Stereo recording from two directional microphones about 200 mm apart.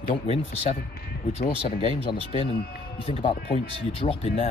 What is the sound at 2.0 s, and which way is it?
Speech, 25° left (ahead or behind).